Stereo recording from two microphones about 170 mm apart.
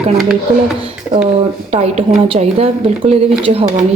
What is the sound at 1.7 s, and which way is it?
A woman's voice, 40° right (ahead or behind).